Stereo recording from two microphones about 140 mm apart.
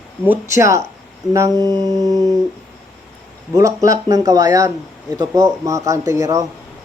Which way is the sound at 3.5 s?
25° right (ahead or behind).